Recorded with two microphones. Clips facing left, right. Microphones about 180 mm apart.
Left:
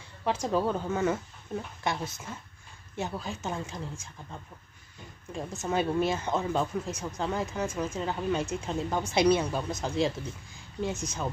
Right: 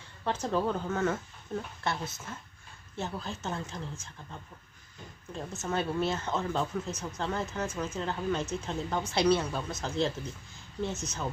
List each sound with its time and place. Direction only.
0.2 s speech: 10° left (ahead or behind)
3.0 s speech: 10° left (ahead or behind)